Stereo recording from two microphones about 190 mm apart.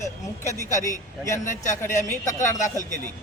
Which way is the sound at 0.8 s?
15° left (ahead or behind).